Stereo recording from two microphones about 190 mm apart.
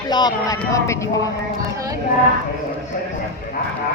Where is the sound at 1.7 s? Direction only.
15° right (ahead or behind).